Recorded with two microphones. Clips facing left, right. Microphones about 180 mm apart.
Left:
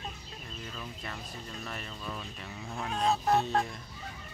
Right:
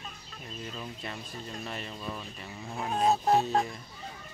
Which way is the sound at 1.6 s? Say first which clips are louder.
Right 3 dB; 25° right (ahead or behind).